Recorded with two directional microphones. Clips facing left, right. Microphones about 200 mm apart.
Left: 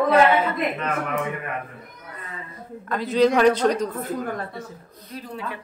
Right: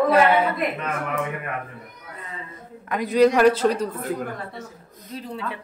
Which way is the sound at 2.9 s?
15° right (ahead or behind).